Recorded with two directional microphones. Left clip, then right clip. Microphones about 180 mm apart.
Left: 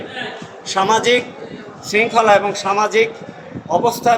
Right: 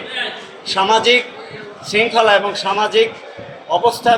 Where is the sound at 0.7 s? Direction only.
10° left (ahead or behind).